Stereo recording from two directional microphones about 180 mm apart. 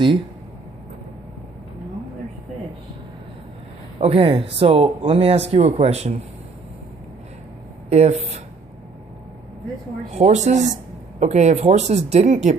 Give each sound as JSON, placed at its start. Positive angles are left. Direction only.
{"t": 4.0, "sound": "speech", "side_deg": -30}
{"t": 7.9, "sound": "speech", "side_deg": -35}
{"t": 10.1, "sound": "speech", "side_deg": -40}